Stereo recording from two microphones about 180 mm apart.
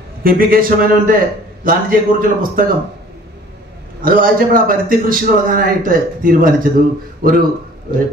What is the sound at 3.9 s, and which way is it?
A man's voice, 50° right (ahead or behind).